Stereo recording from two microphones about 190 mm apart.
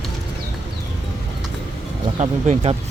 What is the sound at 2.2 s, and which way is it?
Speech, 30° right (ahead or behind).